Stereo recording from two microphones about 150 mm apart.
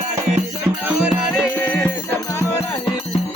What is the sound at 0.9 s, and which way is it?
Music, 10° right (ahead or behind).